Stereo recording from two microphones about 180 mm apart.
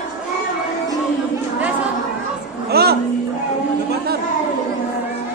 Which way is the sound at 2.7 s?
60° right (ahead or behind).